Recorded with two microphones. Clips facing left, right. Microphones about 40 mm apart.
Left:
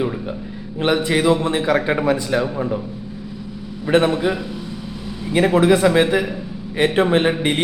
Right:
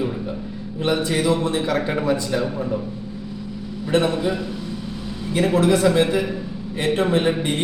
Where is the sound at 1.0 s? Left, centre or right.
Left.